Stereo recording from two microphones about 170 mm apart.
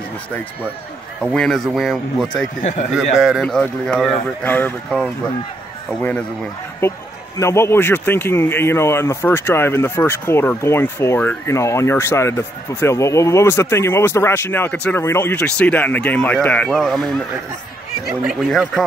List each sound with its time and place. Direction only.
1.2 s speech: 5° left (ahead or behind)
2.6 s a man's voice: 45° left (ahead or behind)
2.9 s speech: centre (ahead or behind)
6.8 s speech: 15° left (ahead or behind)
18.2 s speech: centre (ahead or behind)